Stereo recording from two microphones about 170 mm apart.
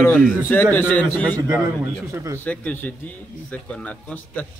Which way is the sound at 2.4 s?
10° left (ahead or behind).